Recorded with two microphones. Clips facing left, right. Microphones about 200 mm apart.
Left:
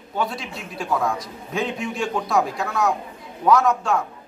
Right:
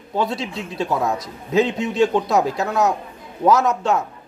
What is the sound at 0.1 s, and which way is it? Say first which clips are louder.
A man's voice: right 4 dB; 25° right (ahead or behind).